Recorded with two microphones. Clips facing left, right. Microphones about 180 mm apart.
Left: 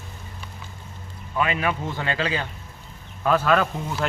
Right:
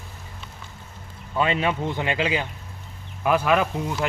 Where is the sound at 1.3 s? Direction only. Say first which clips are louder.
Right 1 dB; 25° right (ahead or behind).